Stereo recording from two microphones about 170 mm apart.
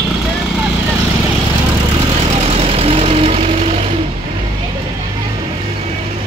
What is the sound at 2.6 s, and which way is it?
Vehicle, 35° right (ahead or behind).